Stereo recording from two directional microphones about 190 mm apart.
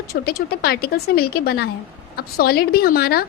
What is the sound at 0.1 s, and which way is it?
A woman's voice, 55° left (ahead or behind).